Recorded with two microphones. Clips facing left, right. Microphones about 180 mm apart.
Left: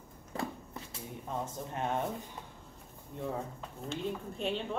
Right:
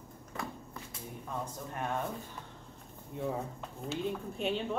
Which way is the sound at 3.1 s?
5° right (ahead or behind).